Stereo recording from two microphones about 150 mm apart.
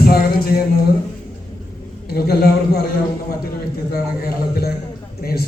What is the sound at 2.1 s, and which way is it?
A man's voice, 90° left.